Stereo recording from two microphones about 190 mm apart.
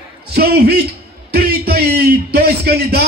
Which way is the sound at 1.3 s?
55° right (ahead or behind).